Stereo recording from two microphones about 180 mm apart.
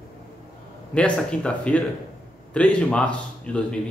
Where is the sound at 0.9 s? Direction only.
5° left (ahead or behind).